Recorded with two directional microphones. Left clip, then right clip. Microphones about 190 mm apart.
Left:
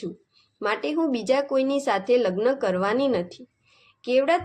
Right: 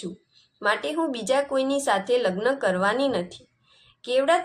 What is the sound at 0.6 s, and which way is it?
Speech, 40° left (ahead or behind).